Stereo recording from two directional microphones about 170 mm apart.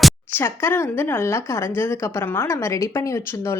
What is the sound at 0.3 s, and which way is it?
A woman's voice, 15° left (ahead or behind).